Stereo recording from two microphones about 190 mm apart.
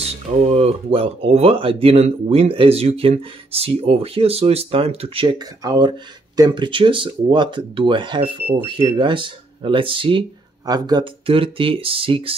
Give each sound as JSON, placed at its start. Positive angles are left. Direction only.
{"t": 0.0, "sound": "speech", "side_deg": -30}